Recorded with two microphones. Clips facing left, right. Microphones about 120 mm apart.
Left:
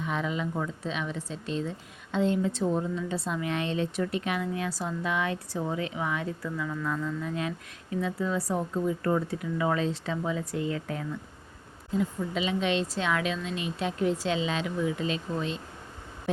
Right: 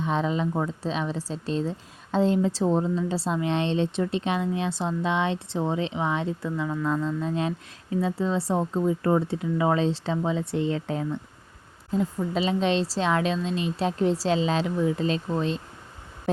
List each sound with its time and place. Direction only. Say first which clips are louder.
0.0 s a woman's voice: right 5 dB; 30° right (ahead or behind)